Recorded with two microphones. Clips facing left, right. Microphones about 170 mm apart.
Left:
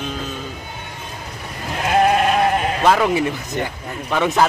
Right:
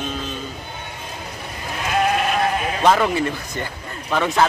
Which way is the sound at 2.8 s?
Centre (ahead or behind).